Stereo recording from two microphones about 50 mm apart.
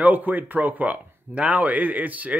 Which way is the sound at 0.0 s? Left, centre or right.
Right.